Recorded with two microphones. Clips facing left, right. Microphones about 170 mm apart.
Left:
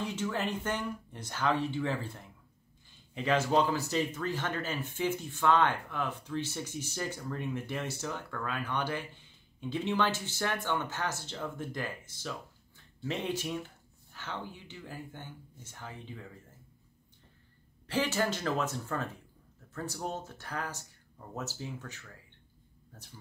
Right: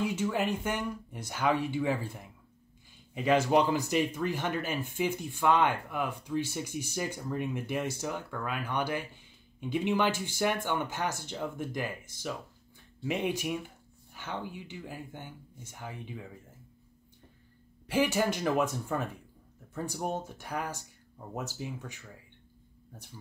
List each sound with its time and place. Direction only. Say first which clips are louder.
0.0 s speech: right 4 dB; 10° right (ahead or behind)
17.8 s speech: right 3 dB; 10° right (ahead or behind)